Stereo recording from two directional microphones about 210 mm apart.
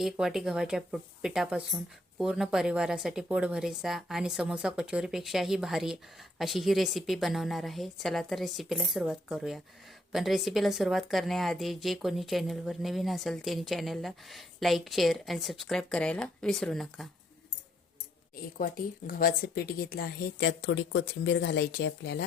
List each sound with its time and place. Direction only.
0.0 s a woman's voice: centre (ahead or behind)
18.3 s speech: 40° left (ahead or behind)